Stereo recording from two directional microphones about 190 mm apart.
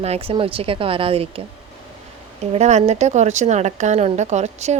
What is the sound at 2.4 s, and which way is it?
A woman's voice, 35° right (ahead or behind).